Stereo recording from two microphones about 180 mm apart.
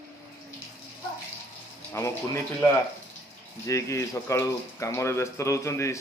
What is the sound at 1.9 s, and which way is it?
Speech, 20° left (ahead or behind).